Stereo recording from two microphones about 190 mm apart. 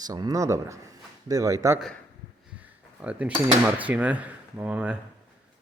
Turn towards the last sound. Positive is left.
turn(degrees=-5)  # may be behind; listen again after turning